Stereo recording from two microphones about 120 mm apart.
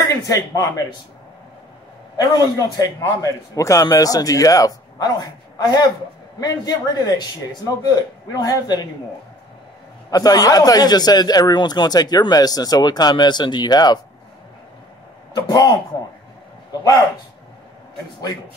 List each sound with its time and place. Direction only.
0.1 s a man's voice: 30° left (ahead or behind)
2.1 s speech: 35° left (ahead or behind)
10.1 s speech: 30° left (ahead or behind)
15.3 s speech: 35° left (ahead or behind)